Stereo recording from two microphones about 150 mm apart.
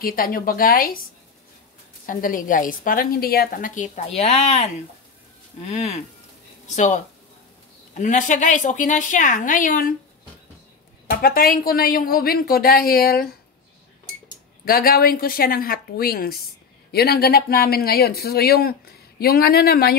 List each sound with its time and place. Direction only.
0.0 s a woman's voice: 75° left (ahead or behind)
2.0 s a woman's voice: 65° left (ahead or behind)
11.1 s speech: 85° left
14.6 s a woman's voice: 80° left